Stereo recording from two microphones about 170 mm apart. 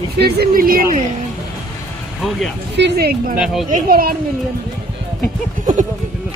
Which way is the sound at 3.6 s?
55° right (ahead or behind).